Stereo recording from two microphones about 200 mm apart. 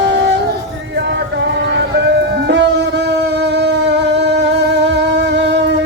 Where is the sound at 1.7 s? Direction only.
60° right (ahead or behind).